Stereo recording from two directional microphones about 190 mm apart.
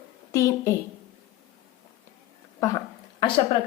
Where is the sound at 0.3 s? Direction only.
15° left (ahead or behind).